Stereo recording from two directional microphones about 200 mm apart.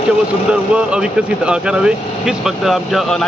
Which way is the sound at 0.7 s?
5° right (ahead or behind).